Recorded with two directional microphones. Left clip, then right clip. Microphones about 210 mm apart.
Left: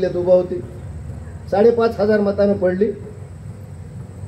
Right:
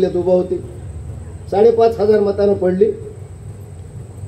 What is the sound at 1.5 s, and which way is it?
Speech, 50° right (ahead or behind).